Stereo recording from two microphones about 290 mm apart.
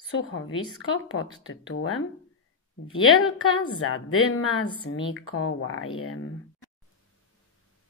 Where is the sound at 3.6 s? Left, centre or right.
Left.